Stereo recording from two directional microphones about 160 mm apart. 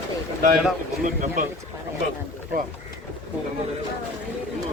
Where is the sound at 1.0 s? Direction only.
55° right (ahead or behind).